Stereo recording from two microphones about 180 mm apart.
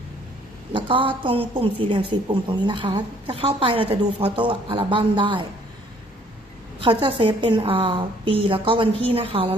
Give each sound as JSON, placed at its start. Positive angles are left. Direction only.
{"t": 0.7, "sound": "a woman's voice", "side_deg": -25}
{"t": 6.7, "sound": "a woman's voice", "side_deg": -30}